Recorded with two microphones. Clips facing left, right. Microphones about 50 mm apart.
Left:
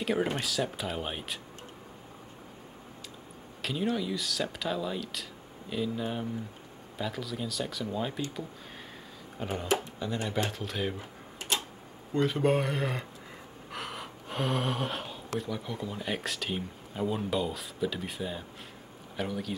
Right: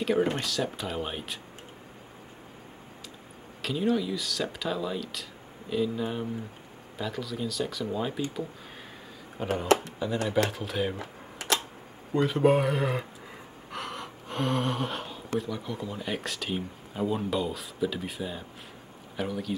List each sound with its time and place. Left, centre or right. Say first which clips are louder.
0.0 s speech: right 3 dB; centre
3.6 s speech: right 4 dB; centre
9.4 s speech: right 6 dB; centre
11.0 s typewriter: right 3 dB; right
12.1 s speech: right 3 dB; centre